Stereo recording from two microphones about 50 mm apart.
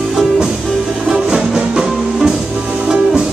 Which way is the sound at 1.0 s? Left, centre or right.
Centre.